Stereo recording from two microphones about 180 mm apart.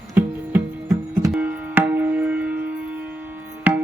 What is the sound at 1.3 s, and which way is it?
Music, 10° right (ahead or behind).